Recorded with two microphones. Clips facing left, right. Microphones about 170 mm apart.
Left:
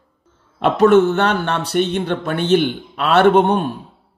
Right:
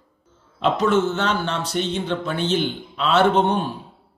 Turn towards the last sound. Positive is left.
turn(degrees=60)  # may be behind; listen again after turning